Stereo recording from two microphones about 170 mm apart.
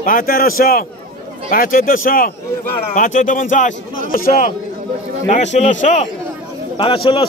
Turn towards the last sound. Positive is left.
turn(degrees=30)  # may be behind; listen again after turning